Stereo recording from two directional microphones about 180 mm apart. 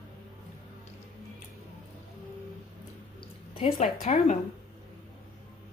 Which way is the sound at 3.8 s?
40° left (ahead or behind).